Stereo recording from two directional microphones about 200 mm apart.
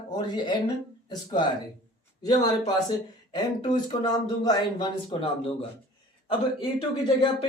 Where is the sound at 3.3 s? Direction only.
20° left (ahead or behind).